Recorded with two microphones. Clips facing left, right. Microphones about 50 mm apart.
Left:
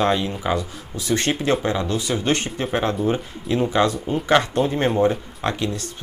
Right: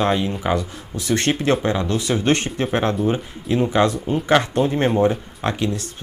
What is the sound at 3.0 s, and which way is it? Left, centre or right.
Speech, centre.